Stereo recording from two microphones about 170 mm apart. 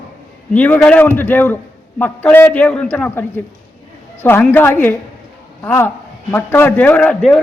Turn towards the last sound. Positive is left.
turn(degrees=5)  # may be behind; listen again after turning